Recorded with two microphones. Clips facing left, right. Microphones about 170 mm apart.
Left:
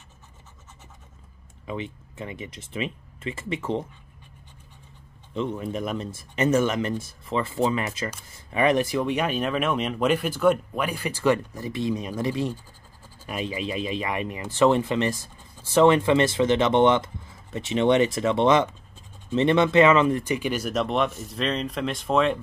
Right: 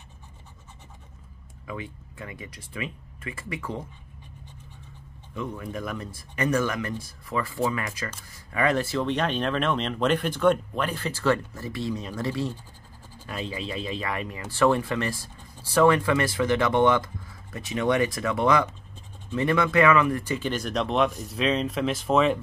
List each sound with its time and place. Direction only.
1.7 s speech: 20° left (ahead or behind)
5.3 s speech: 25° left (ahead or behind); by 22.4 s centre (ahead or behind)